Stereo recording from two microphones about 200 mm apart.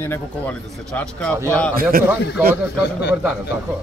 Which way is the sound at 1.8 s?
45° right (ahead or behind).